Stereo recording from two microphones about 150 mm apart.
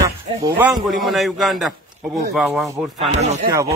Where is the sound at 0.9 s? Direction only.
Centre (ahead or behind).